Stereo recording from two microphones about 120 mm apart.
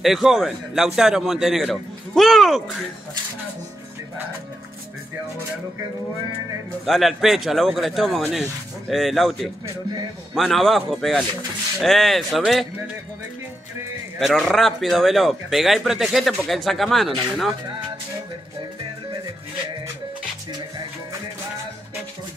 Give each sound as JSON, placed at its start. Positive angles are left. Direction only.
{"t": 0.0, "sound": "a man's voice", "side_deg": 0}
{"t": 6.9, "sound": "a man's voice", "side_deg": 0}
{"t": 14.2, "sound": "a man's voice", "side_deg": 5}